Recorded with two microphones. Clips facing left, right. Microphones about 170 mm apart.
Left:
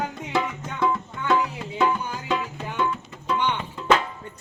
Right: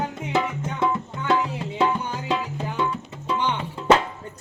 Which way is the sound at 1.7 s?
30° right (ahead or behind).